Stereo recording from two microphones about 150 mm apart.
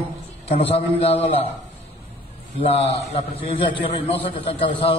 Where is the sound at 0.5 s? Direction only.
40° left (ahead or behind).